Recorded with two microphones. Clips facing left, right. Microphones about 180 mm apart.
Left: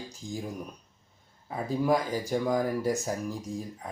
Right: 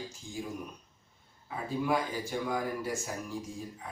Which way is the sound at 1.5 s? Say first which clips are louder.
Left 5 dB; 40° left (ahead or behind).